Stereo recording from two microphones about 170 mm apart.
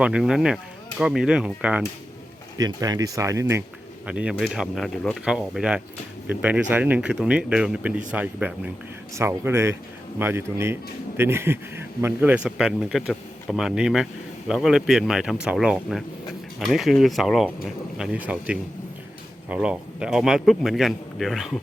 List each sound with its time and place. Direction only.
0.0 s speech: 5° right (ahead or behind)
2.6 s speech: 20° right (ahead or behind)
4.0 s speech: 5° right (ahead or behind)